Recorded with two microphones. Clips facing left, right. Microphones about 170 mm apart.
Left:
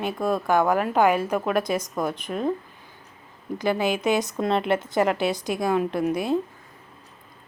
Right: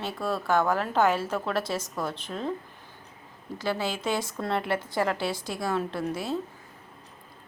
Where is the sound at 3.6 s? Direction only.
15° left (ahead or behind).